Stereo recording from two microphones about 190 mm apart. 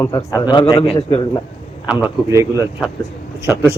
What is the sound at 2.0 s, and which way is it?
Speech, 15° right (ahead or behind).